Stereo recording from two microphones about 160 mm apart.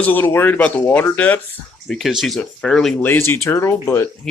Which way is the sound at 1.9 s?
Centre (ahead or behind).